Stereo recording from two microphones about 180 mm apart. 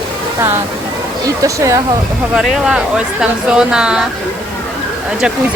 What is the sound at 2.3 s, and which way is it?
Speech, 5° right (ahead or behind).